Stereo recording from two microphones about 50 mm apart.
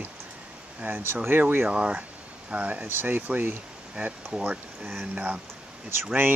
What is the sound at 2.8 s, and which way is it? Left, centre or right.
Speech, right.